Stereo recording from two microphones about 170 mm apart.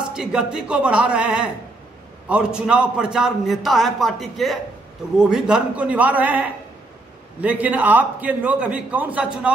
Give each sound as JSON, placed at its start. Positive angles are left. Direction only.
{"t": 0.1, "sound": "a man's voice", "side_deg": -5}